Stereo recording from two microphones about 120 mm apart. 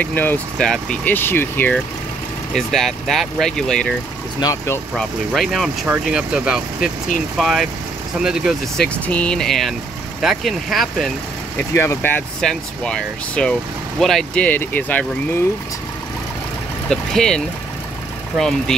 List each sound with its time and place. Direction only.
0.0 s speech: 15° left (ahead or behind)
2.5 s speech: centre (ahead or behind)
4.4 s speech: 30° left (ahead or behind)
4.9 s speech: centre (ahead or behind)
8.8 s speech: 10° left (ahead or behind)
11.5 s speech: 20° left (ahead or behind)
12.4 s speech: 5° left (ahead or behind)
16.9 s speech: 5° left (ahead or behind)
18.4 s speech: 5° left (ahead or behind)